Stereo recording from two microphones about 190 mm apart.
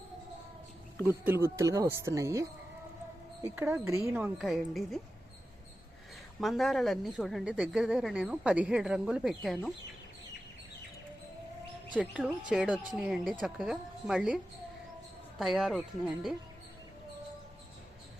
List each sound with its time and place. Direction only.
1.2 s a woman's voice: 10° right (ahead or behind)
3.5 s a woman's voice: 10° right (ahead or behind)
6.4 s a woman's voice: centre (ahead or behind)
11.9 s a woman's voice: 5° right (ahead or behind)
15.4 s a woman's voice: centre (ahead or behind)